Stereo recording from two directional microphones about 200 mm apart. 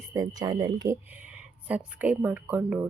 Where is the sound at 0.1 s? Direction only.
20° right (ahead or behind).